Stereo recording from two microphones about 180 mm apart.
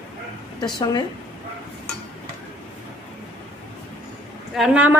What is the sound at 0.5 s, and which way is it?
Speech, 25° left (ahead or behind).